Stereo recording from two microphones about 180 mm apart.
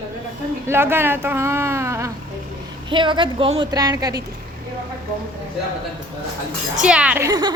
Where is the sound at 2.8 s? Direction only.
25° right (ahead or behind).